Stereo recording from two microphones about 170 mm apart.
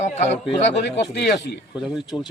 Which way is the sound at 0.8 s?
85° left.